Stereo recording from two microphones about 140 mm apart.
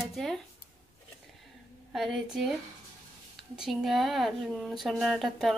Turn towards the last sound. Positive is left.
turn(degrees=0)  # may be behind; listen again after turning